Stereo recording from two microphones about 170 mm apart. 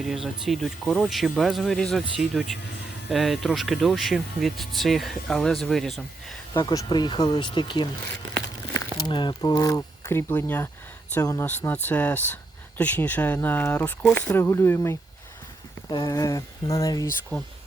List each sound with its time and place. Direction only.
0.0 s speech: centre (ahead or behind)
6.5 s speech: 20° left (ahead or behind)